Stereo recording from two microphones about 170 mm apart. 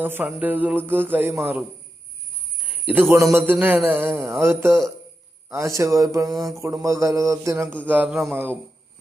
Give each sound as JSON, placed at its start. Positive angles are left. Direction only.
{"t": 0.0, "sound": "a man's voice", "side_deg": -10}
{"t": 2.6, "sound": "a man's voice", "side_deg": -10}